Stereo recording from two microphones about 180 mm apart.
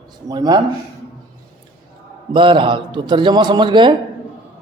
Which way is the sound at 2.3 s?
30° right (ahead or behind).